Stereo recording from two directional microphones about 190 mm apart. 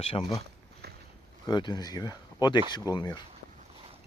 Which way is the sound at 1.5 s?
25° left (ahead or behind).